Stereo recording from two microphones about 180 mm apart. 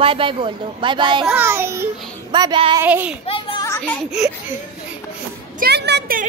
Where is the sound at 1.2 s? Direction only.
10° right (ahead or behind).